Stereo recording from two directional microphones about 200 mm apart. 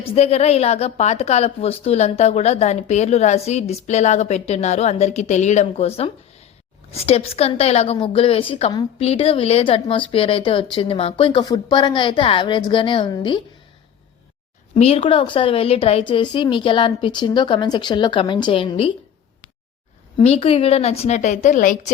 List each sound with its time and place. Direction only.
0.0 s a woman's voice: 30° left (ahead or behind)
14.8 s a woman's voice: 30° left (ahead or behind)
20.1 s a woman's voice: 30° left (ahead or behind)